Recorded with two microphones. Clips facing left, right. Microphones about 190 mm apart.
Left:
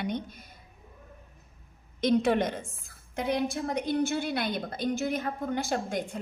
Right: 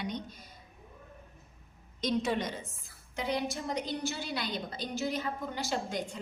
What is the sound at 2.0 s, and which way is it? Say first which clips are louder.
A woman's voice: left 7 dB; 60° left (ahead or behind).